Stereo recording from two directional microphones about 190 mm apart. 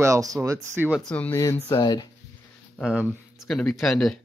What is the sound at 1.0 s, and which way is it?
Speech, 5° left (ahead or behind).